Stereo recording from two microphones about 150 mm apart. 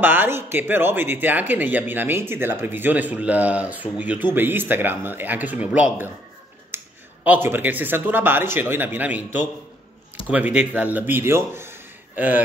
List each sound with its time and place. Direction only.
0.0 s speech: 15° right (ahead or behind)
6.7 s a sound: 15° right (ahead or behind)
7.2 s a man's voice: 15° right (ahead or behind)